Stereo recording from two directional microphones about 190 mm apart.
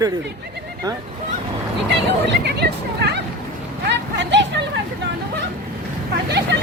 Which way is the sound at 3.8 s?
70° right (ahead or behind).